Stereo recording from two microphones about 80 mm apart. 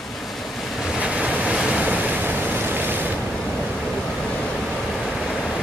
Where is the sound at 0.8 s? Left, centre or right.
Centre.